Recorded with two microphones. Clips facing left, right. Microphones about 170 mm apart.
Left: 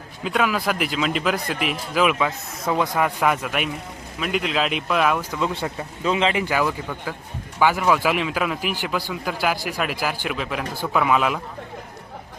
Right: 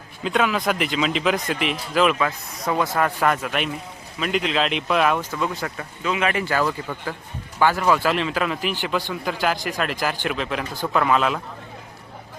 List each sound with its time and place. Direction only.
0.3 s a man's voice: 5° left (ahead or behind)
5.5 s a man's voice: 25° left (ahead or behind); by 11.3 s 5° left (ahead or behind)